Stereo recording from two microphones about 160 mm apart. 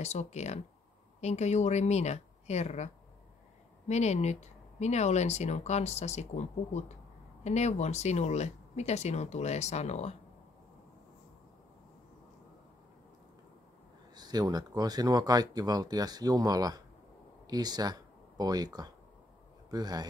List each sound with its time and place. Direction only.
0.0 s speech: 45° left (ahead or behind)
14.1 s speech: 25° right (ahead or behind)